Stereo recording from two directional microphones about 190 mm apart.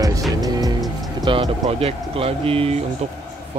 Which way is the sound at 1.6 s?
30° right (ahead or behind).